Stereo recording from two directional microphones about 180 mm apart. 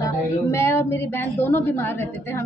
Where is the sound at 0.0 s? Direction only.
15° left (ahead or behind).